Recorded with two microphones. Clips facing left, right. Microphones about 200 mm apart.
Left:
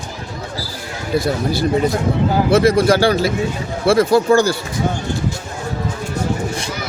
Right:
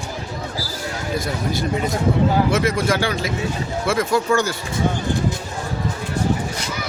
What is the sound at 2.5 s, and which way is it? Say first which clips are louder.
Speech: left 7 dB; 35° left (ahead or behind).